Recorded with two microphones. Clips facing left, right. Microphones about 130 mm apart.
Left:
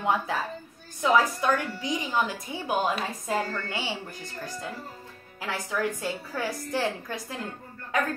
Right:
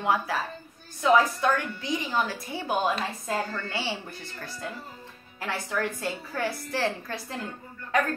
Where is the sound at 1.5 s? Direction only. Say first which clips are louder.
Left 1 dB; 15° left (ahead or behind).